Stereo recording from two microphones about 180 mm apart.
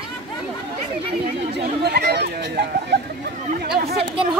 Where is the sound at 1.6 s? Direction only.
65° right (ahead or behind).